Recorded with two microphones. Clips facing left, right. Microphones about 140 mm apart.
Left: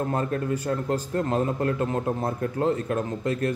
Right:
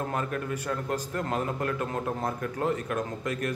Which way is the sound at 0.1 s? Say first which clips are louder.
Left 5 dB; 30° left (ahead or behind).